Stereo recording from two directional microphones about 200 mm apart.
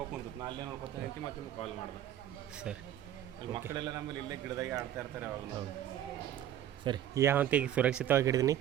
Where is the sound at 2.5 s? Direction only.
5° right (ahead or behind).